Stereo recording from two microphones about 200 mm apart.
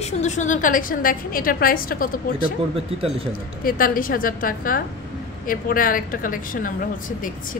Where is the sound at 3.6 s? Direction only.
45° left (ahead or behind).